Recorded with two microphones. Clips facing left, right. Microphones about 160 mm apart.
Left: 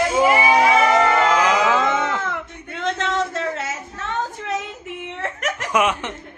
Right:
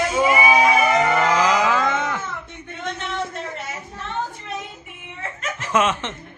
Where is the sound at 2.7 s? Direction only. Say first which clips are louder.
Left 6 dB; 90° left; by 5.5 s 70° left (ahead or behind).